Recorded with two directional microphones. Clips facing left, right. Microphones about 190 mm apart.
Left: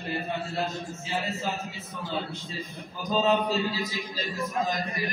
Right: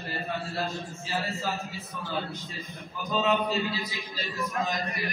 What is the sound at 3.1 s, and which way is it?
Speech, 40° left (ahead or behind).